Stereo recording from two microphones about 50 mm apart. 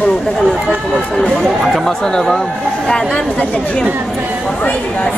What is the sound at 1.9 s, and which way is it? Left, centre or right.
A woman's voice, centre.